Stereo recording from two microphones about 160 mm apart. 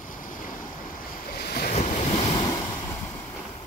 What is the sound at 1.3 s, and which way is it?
Waves, 85° left.